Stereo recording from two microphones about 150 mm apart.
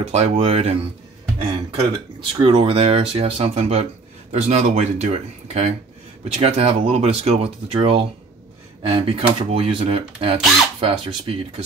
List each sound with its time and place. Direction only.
0.0 s speech: 45° right (ahead or behind)